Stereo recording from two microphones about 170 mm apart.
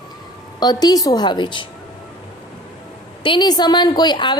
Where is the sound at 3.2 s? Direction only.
25° left (ahead or behind).